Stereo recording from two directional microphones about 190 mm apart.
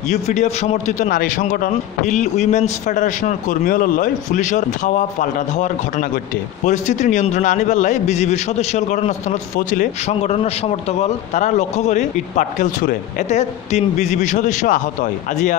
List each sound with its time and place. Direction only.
0.1 s a man's voice: 35° left (ahead or behind)